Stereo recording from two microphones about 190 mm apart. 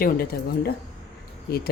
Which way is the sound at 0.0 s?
50° left (ahead or behind).